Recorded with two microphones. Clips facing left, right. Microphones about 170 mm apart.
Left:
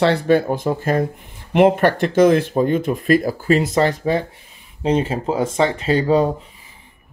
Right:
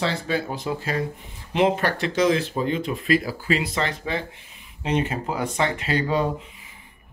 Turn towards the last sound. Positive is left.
turn(degrees=35)  # may be behind; listen again after turning